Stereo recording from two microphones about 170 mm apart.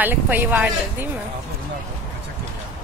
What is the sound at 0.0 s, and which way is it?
Speech, 10° right (ahead or behind).